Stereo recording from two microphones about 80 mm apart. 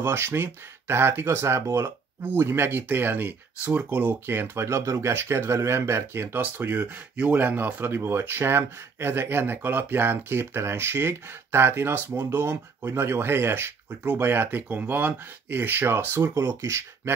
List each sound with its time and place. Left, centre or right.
0.0 s speech: right